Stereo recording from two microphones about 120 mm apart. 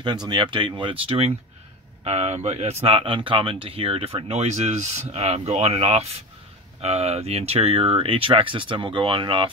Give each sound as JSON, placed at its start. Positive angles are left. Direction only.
{"t": 0.0, "sound": "speech", "side_deg": -40}
{"t": 2.0, "sound": "speech", "side_deg": -65}